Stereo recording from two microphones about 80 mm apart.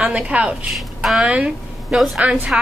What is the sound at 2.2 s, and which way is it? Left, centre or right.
Speech, centre.